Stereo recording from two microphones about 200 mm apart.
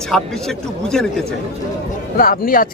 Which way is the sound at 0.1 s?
Centre (ahead or behind).